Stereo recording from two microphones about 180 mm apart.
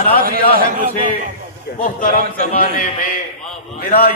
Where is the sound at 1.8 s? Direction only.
50° left (ahead or behind).